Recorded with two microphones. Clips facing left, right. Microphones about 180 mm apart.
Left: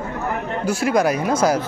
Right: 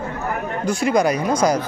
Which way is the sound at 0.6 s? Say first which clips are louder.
Even; 5° left (ahead or behind).